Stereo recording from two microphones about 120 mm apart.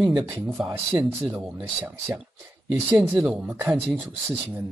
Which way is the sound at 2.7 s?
10° right (ahead or behind).